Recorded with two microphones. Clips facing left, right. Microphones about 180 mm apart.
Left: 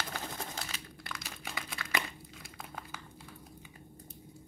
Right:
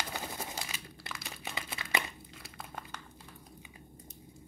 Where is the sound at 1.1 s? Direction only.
20° right (ahead or behind).